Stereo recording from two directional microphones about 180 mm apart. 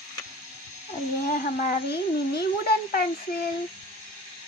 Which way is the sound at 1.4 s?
60° left (ahead or behind).